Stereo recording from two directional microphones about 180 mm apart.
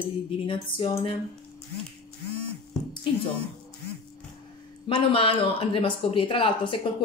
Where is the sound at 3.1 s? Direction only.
30° left (ahead or behind).